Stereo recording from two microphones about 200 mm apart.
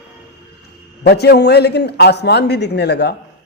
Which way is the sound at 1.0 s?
55° left (ahead or behind).